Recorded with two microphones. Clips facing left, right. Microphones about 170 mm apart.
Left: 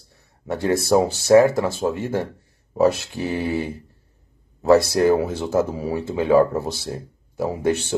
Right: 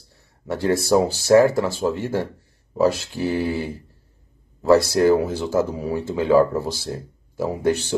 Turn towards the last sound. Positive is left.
turn(degrees=20)  # may be behind; listen again after turning